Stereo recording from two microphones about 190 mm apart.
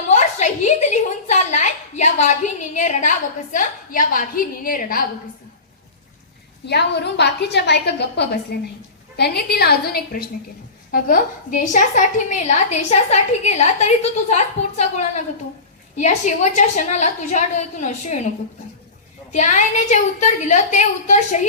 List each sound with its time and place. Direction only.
0.1 s a sound: 35° left (ahead or behind)
1.3 s a woman's voice: 40° left (ahead or behind)
6.7 s a woman's voice: 60° left (ahead or behind); by 18.2 s 40° left (ahead or behind)
19.3 s a woman's voice: 40° left (ahead or behind)